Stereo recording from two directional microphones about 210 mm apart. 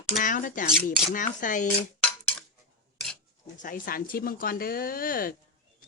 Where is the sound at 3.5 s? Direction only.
40° left (ahead or behind).